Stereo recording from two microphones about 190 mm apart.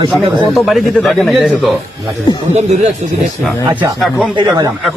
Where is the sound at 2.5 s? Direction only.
35° right (ahead or behind).